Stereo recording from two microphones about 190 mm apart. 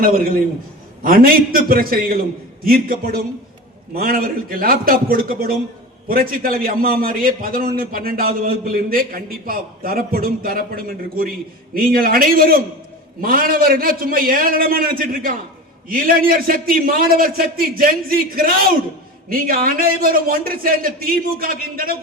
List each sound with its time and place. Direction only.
0.0 s a man's voice: 50° right (ahead or behind)